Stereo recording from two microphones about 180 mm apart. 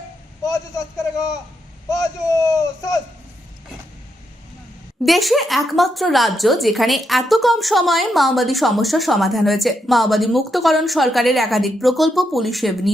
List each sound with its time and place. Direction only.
0.4 s a sound: 15° left (ahead or behind)
1.9 s speech: 20° left (ahead or behind)
5.0 s a woman's voice: centre (ahead or behind)